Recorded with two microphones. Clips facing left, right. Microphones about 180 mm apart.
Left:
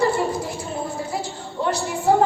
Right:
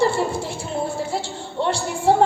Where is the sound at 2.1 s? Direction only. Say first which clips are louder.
Right 1 dB; 30° right (ahead or behind).